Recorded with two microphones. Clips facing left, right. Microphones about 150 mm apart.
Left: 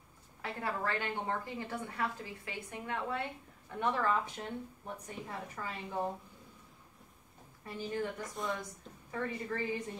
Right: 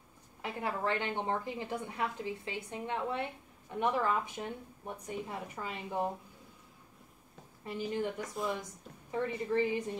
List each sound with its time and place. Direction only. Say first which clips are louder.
0.4 s a woman's voice: right 2 dB; 15° right (ahead or behind)
7.6 s a woman's voice: right 2 dB; 20° right (ahead or behind)
9.1 s a woman's voice: right 5 dB; 20° right (ahead or behind)